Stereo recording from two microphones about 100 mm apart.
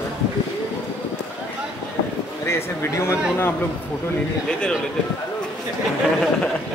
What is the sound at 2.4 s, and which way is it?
Speech, 25° left (ahead or behind).